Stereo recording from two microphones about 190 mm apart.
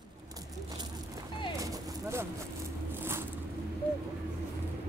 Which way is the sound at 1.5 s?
15° right (ahead or behind).